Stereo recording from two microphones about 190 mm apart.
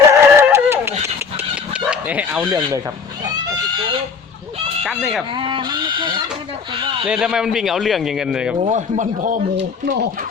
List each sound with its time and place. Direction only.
0.1 s dog: 15° right (ahead or behind)
4.8 s a man's voice: centre (ahead or behind)
5.4 s speech: 25° right (ahead or behind)
7.1 s a man's voice: 5° right (ahead or behind)
8.5 s a man's voice: 35° right (ahead or behind)